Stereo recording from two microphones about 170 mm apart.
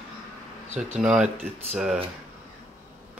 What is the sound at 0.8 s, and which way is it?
Speech, 5° right (ahead or behind).